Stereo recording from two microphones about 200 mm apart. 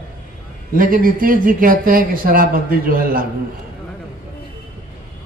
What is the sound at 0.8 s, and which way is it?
A woman's voice, 45° right (ahead or behind).